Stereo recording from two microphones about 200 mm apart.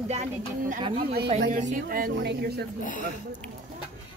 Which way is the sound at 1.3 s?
35° right (ahead or behind).